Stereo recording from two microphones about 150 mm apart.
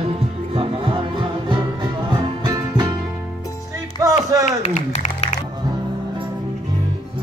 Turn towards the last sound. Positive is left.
turn(degrees=50)  # may be behind; listen again after turning